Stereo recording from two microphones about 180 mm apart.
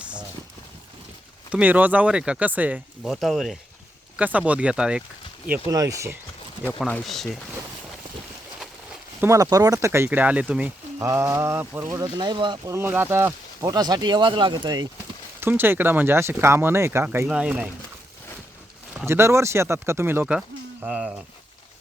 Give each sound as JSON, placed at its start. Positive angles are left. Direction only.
{"t": 0.0, "sound": "a sound", "side_deg": -5}
{"t": 1.5, "sound": "speech", "side_deg": -10}
{"t": 5.5, "sound": "speech", "side_deg": -20}
{"t": 6.7, "sound": "speech", "side_deg": 5}
{"t": 9.2, "sound": "speech", "side_deg": -20}
{"t": 15.4, "sound": "speech", "side_deg": -10}
{"t": 18.9, "sound": "speech", "side_deg": -15}